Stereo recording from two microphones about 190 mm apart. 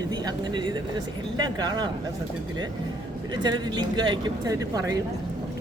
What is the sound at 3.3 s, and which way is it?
Speech, 20° right (ahead or behind).